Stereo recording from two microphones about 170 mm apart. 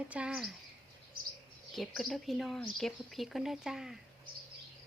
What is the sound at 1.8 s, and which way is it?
A woman's voice, centre (ahead or behind).